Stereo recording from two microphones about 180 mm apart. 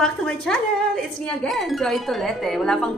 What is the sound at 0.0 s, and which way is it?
Speech, centre (ahead or behind).